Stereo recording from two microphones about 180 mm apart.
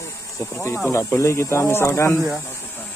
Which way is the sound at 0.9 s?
15° left (ahead or behind).